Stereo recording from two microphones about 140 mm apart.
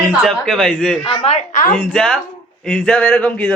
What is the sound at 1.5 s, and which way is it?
Speech, 75° left (ahead or behind).